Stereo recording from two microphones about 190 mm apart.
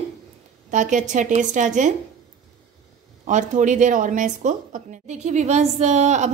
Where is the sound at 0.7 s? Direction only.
40° right (ahead or behind).